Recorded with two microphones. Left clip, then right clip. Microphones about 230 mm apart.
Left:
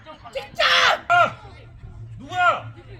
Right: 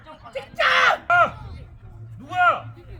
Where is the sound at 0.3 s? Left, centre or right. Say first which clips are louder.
Left 1 dB; centre.